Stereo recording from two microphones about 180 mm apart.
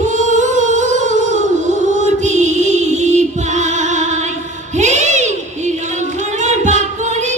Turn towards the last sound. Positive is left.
turn(degrees=-40)  # may be behind; listen again after turning